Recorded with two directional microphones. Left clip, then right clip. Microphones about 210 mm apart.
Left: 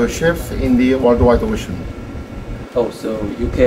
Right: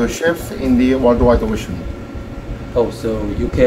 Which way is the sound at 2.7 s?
30° right (ahead or behind).